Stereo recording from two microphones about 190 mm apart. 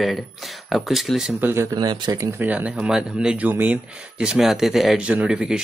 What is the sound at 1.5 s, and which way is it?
Speech, 15° right (ahead or behind).